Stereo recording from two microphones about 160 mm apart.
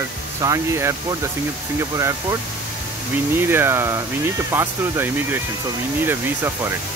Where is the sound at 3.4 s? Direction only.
15° right (ahead or behind).